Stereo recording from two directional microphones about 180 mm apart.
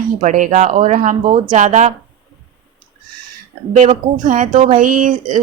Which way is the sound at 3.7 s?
40° right (ahead or behind).